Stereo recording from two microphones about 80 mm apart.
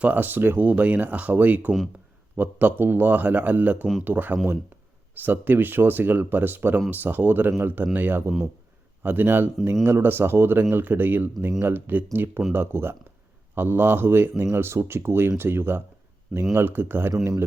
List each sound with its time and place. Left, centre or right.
0.0 s speech: right